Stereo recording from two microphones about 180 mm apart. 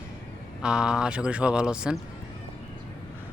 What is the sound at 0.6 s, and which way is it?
Speech, 5° right (ahead or behind).